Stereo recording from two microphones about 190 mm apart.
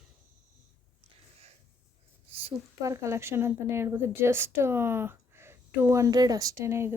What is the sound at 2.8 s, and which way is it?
A woman's voice, 15° right (ahead or behind).